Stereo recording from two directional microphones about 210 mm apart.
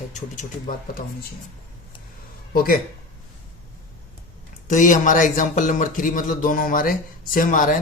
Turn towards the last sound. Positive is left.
turn(degrees=40)  # may be behind; listen again after turning